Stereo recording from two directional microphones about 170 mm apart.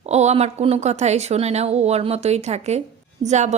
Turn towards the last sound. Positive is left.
turn(degrees=-40)  # may be behind; listen again after turning